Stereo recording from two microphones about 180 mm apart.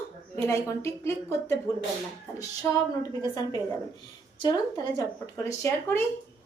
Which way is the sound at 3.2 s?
20° left (ahead or behind).